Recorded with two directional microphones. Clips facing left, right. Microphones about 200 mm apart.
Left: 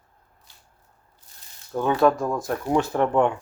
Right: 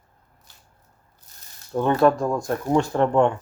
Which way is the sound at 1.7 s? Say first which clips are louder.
Right 1 dB; centre (ahead or behind).